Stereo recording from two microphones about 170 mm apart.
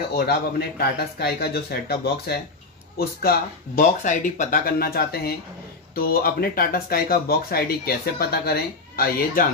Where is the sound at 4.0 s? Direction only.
45° left (ahead or behind).